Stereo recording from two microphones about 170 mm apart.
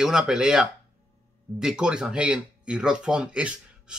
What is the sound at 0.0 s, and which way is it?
Speech, 5° right (ahead or behind).